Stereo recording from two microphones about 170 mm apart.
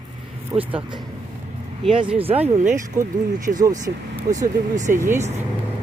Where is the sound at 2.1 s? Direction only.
35° right (ahead or behind).